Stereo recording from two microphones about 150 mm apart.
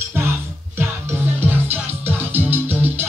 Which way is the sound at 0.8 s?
15° right (ahead or behind).